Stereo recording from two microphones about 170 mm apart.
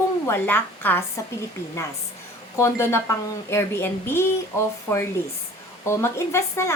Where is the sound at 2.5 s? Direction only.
15° left (ahead or behind).